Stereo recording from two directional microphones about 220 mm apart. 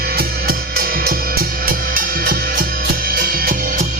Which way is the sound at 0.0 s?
45° right (ahead or behind).